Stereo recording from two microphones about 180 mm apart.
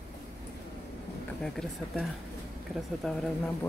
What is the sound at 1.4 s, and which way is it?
Speech, 5° left (ahead or behind).